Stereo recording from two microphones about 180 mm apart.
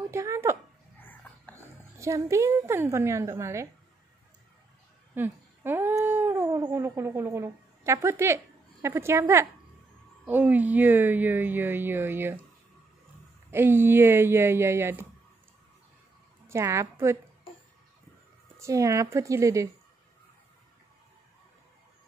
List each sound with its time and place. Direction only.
0.1 s speech: 15° right (ahead or behind)
1.0 s wheeze: 10° left (ahead or behind)
2.0 s speech: 15° right (ahead or behind)
5.1 s speech: 10° right (ahead or behind)
13.5 s speech: 10° right (ahead or behind)
16.4 s a woman's voice: 15° right (ahead or behind)
18.6 s speech: 15° right (ahead or behind)